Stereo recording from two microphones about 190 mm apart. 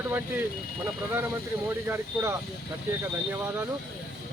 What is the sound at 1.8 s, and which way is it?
Speech, 15° right (ahead or behind).